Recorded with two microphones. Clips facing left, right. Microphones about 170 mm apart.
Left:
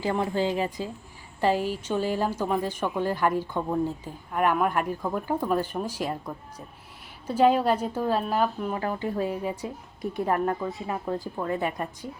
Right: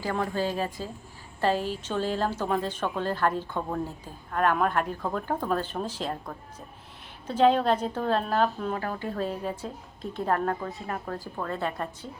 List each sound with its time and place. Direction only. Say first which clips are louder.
0.0 s a woman's voice: left 3 dB; 20° left (ahead or behind)